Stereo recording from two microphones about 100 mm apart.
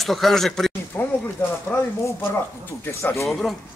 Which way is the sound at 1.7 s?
15° left (ahead or behind).